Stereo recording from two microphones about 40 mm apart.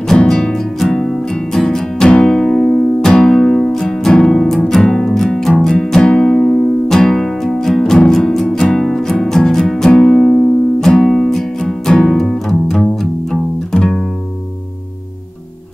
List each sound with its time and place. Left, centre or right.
0.1 s music: centre
10.1 s music: centre